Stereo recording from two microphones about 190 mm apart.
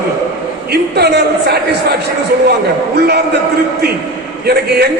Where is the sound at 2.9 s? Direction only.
60° right (ahead or behind).